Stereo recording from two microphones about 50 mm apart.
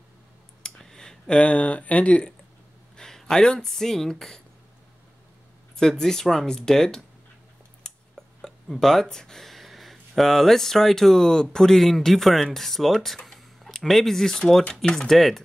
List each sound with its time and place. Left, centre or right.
0.6 s a sound: centre
3.0 s speech: centre
5.8 s speech: centre
8.4 s a man's voice: centre